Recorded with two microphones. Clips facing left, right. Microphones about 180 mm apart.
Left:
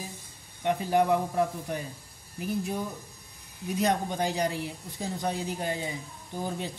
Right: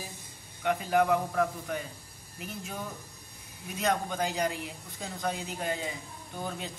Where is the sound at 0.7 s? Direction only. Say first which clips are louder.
Left 1 dB; 30° left (ahead or behind).